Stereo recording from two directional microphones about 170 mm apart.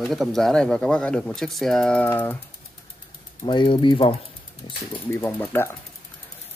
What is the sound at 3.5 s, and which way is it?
Speech, 30° left (ahead or behind).